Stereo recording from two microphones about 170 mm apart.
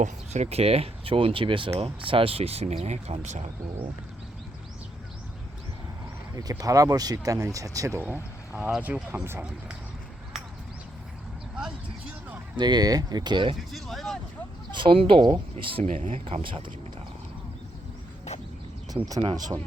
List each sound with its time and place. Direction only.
0.0 s speech: 40° right (ahead or behind)
6.3 s speech: 20° right (ahead or behind)
11.5 s a sound: 5° right (ahead or behind)
12.5 s speech: 25° right (ahead or behind)
13.7 s speech: centre (ahead or behind)
14.7 s speech: 30° right (ahead or behind)
18.3 s a sound: 40° left (ahead or behind)
19.0 s speech: 20° right (ahead or behind)